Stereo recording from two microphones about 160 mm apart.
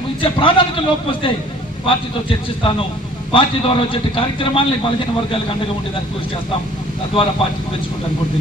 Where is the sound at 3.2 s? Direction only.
35° left (ahead or behind).